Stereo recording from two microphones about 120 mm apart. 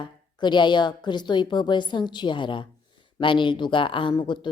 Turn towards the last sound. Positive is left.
turn(degrees=40)  # may be behind; listen again after turning